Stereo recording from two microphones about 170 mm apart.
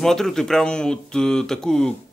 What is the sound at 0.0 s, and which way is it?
Speech, centre (ahead or behind).